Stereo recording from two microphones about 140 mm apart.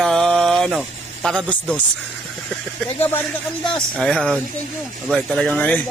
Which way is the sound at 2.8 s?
40° left (ahead or behind).